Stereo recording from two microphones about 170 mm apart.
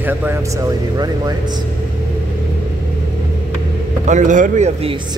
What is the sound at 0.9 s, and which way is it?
Speech, 20° right (ahead or behind).